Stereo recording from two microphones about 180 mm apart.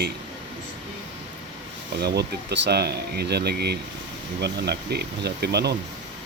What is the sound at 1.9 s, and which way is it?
Speech, 65° right (ahead or behind).